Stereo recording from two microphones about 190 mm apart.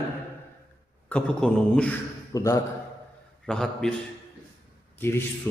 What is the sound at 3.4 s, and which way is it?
Speech, centre (ahead or behind).